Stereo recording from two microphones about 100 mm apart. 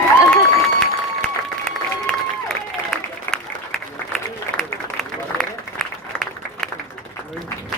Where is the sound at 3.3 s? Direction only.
5° left (ahead or behind).